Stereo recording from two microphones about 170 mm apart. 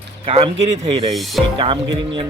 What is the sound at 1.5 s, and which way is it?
Speech, 30° right (ahead or behind).